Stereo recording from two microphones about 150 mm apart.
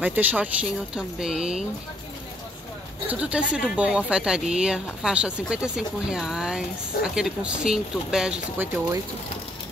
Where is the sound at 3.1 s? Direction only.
10° right (ahead or behind).